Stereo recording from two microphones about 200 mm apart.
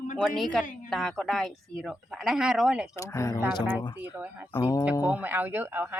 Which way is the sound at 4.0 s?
10° right (ahead or behind).